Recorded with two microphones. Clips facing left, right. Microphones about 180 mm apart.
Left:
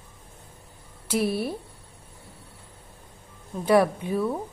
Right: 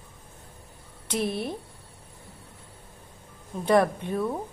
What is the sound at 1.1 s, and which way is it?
Speech, 5° left (ahead or behind).